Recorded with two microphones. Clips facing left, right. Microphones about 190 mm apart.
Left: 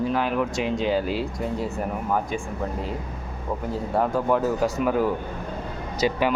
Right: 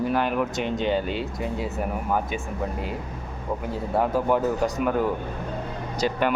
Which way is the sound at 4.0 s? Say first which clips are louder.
Even; 5° right (ahead or behind).